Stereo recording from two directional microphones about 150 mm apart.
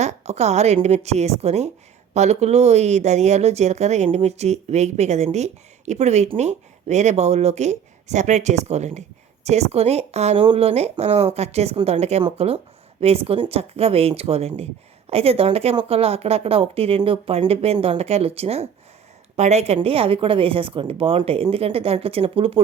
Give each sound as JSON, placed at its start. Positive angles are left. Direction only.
{"t": 0.0, "sound": "speech", "side_deg": -50}